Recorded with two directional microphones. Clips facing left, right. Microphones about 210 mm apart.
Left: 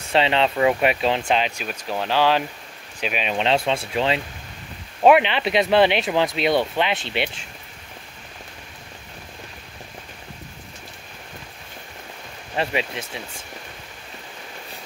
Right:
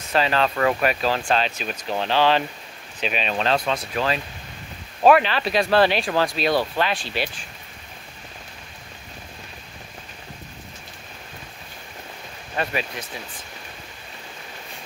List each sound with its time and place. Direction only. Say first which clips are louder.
0.1 s speech: left 2 dB; 25° left (ahead or behind)
3.4 s speech: left 3 dB; 25° left (ahead or behind)
12.5 s speech: left 2 dB; 25° left (ahead or behind)